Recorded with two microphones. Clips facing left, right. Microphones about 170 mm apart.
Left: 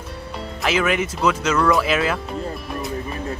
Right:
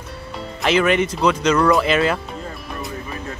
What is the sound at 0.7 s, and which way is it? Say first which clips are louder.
Speech: right 4 dB; 5° left (ahead or behind).